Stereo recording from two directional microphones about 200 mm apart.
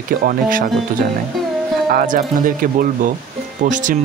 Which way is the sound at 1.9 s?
40° right (ahead or behind).